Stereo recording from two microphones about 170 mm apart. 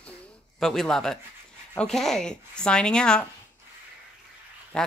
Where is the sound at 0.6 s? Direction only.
5° left (ahead or behind).